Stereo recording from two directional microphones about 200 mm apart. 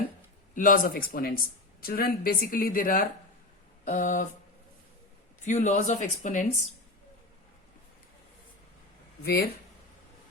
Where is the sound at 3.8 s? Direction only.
40° left (ahead or behind).